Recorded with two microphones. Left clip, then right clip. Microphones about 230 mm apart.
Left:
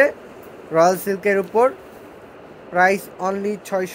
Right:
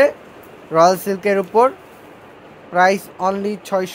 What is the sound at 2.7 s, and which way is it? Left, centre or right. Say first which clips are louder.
Speech: right 2 dB; right.